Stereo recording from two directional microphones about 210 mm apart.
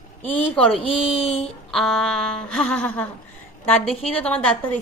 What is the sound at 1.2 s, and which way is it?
Babbling, 30° left (ahead or behind).